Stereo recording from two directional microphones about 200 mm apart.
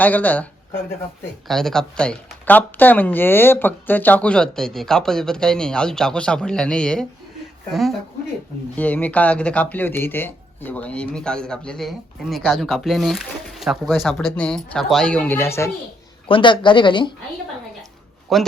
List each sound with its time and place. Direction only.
0.0 s speech: 10° left (ahead or behind)
16.3 s speech: 25° left (ahead or behind)
18.3 s speech: centre (ahead or behind)